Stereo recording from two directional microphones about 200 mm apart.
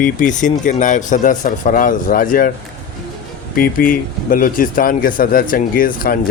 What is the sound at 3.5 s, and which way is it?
Speech, 45° left (ahead or behind).